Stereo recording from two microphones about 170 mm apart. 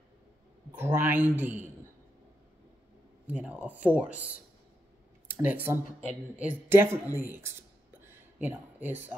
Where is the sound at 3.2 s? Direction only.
5° right (ahead or behind).